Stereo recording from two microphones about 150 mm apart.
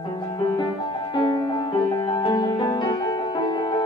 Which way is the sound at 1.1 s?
25° left (ahead or behind).